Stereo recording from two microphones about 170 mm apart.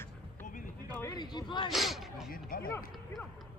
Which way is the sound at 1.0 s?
25° left (ahead or behind).